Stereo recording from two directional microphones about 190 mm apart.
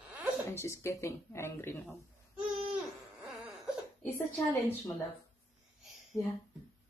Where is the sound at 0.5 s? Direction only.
15° left (ahead or behind).